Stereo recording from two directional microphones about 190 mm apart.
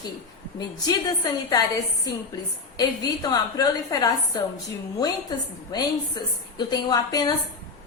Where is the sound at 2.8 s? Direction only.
20° left (ahead or behind).